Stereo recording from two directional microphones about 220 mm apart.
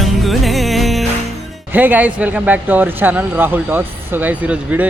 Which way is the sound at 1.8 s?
5° right (ahead or behind).